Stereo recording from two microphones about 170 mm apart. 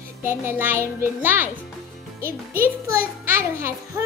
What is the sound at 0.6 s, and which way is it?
Speech, 15° right (ahead or behind).